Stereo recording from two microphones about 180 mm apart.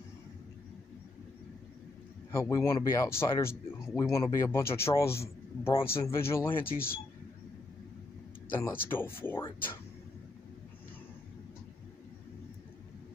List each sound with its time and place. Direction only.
2.3 s a man's voice: 15° left (ahead or behind)
6.6 s speech: 55° left (ahead or behind)
8.9 s speech: 10° left (ahead or behind)